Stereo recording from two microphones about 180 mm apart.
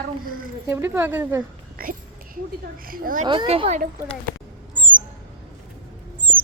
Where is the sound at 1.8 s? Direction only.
50° right (ahead or behind).